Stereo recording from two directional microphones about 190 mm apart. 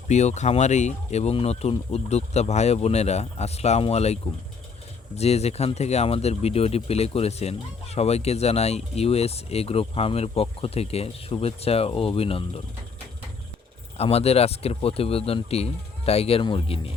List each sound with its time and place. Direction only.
0.1 s speech: 35° left (ahead or behind)
14.0 s speech: 30° left (ahead or behind)